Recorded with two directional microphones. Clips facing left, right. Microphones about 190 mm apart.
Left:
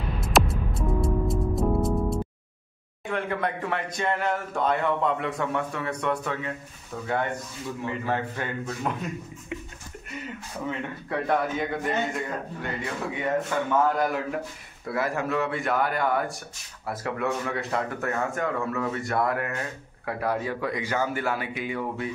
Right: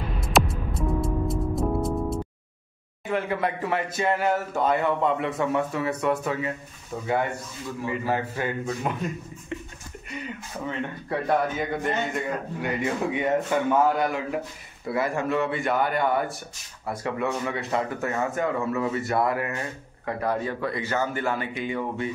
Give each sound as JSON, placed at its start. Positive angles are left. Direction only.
{"t": 0.2, "sound": "music", "side_deg": 0}
{"t": 3.1, "sound": "speech", "side_deg": -5}
{"t": 7.8, "sound": "a man's voice", "side_deg": -10}
{"t": 10.1, "sound": "speech", "side_deg": 0}
{"t": 12.6, "sound": "a man's voice", "side_deg": -15}
{"t": 13.8, "sound": "speech", "side_deg": 0}
{"t": 20.1, "sound": "a man's voice", "side_deg": 10}